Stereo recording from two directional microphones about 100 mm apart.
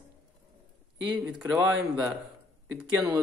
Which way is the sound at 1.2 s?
10° right (ahead or behind).